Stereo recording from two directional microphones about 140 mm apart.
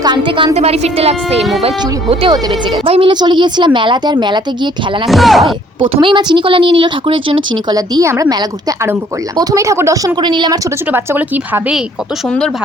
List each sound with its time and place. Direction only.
0.0 s a woman's voice: 35° right (ahead or behind)
0.5 s a woman's voice: 50° right (ahead or behind)
2.3 s a woman's voice: 35° right (ahead or behind)
5.0 s speech: centre (ahead or behind)
5.8 s a woman's voice: 35° right (ahead or behind)
7.8 s a woman's voice: 25° right (ahead or behind)
10.2 s a woman's voice: 35° right (ahead or behind)
10.9 s speech: 15° right (ahead or behind)